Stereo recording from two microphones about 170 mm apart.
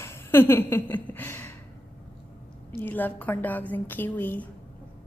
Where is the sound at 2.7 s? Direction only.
10° left (ahead or behind).